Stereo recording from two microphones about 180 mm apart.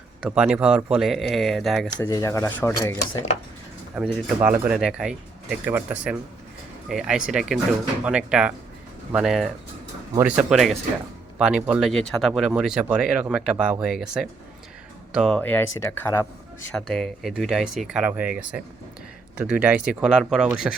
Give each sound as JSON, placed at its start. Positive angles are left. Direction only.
{"t": 0.2, "sound": "speech", "side_deg": -5}
{"t": 2.0, "sound": "speech", "side_deg": 15}
{"t": 3.9, "sound": "speech", "side_deg": -5}
{"t": 15.4, "sound": "speech", "side_deg": 10}
{"t": 16.7, "sound": "speech", "side_deg": 0}